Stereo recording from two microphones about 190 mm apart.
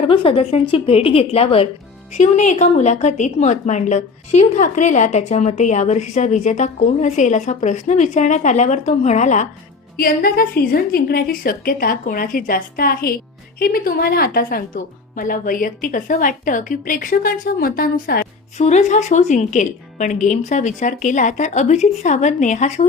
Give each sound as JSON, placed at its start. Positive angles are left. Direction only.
{"t": 0.1, "sound": "a woman's voice", "side_deg": 30}
{"t": 10.0, "sound": "speech", "side_deg": 50}
{"t": 18.5, "sound": "a woman's voice", "side_deg": 35}